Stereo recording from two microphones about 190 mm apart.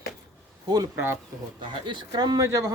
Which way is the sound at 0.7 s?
15° right (ahead or behind).